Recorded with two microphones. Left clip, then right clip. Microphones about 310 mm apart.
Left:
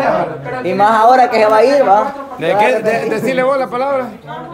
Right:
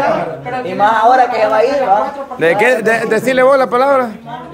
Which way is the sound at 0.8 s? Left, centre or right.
Left.